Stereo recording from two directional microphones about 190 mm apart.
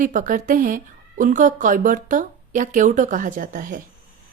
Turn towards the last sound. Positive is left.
turn(degrees=-45)  # may be behind; listen again after turning